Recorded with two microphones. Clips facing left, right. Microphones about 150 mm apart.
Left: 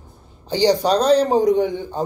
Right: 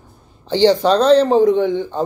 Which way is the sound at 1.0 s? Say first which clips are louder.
Right 4 dB; 10° left (ahead or behind).